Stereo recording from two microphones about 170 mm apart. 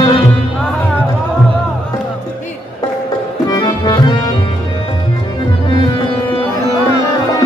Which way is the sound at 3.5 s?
25° left (ahead or behind).